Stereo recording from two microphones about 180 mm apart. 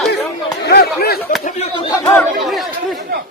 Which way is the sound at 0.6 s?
60° left (ahead or behind).